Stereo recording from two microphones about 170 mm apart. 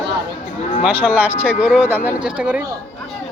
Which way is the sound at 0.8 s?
10° right (ahead or behind).